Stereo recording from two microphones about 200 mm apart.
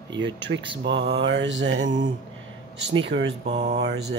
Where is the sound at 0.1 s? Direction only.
65° right (ahead or behind).